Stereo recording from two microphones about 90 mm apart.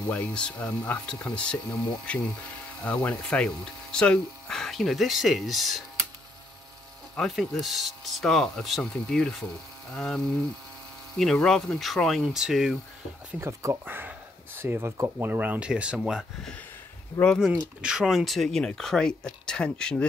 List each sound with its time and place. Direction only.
0.1 s speech: 15° left (ahead or behind)
7.2 s speech: 5° left (ahead or behind)
13.4 s speech: 35° right (ahead or behind)
13.8 s speech: 25° right (ahead or behind)
17.1 s speech: 55° left (ahead or behind)
17.8 s speech: 5° right (ahead or behind)